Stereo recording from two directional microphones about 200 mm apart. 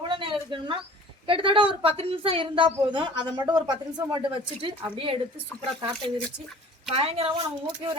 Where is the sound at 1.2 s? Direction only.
25° right (ahead or behind).